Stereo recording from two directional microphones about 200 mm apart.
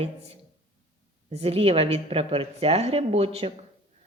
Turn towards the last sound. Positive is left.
turn(degrees=-30)  # may be behind; listen again after turning